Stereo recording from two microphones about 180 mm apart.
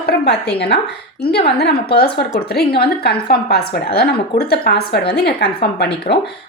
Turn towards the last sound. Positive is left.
turn(degrees=65)  # may be behind; listen again after turning